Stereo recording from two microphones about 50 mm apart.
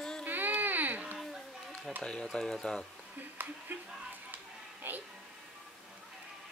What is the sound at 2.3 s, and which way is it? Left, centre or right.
Speech, centre.